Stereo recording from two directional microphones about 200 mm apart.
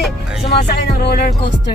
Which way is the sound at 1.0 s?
55° left (ahead or behind).